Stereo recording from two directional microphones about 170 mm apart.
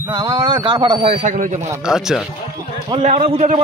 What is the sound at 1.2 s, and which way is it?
Speech, 45° right (ahead or behind).